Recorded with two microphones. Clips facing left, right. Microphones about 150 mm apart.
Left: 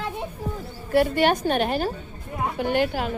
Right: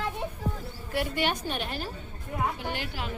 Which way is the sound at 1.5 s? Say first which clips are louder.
Left 11 dB; 60° left (ahead or behind).